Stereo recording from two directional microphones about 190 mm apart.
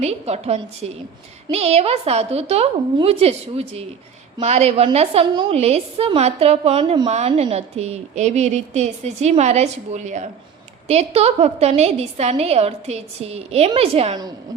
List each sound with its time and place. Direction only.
0.0 s a woman's voice: 35° right (ahead or behind)